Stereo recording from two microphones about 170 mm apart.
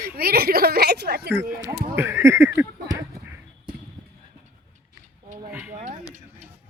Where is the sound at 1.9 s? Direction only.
15° right (ahead or behind).